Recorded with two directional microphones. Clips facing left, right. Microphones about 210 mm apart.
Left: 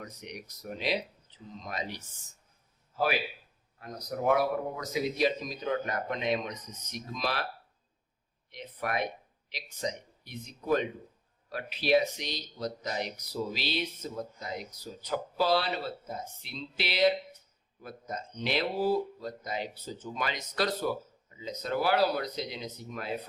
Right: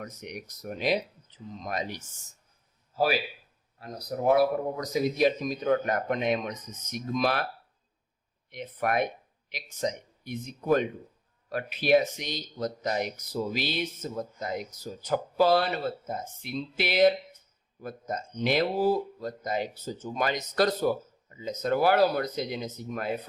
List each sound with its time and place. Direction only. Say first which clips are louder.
0.0 s speech: right 4 dB; 50° right (ahead or behind)
2.9 s speech: right 3 dB; 35° right (ahead or behind)
8.5 s speech: right 5 dB; 50° right (ahead or behind)